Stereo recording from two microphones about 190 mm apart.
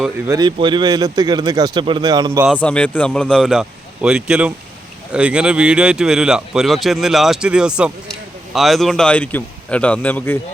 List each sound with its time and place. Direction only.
0.3 s speech: 20° right (ahead or behind)
2.6 s a man's voice: 5° left (ahead or behind)